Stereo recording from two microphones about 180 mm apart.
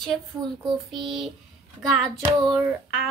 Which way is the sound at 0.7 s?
30° right (ahead or behind).